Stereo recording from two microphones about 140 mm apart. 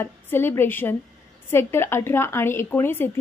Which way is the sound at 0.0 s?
15° left (ahead or behind).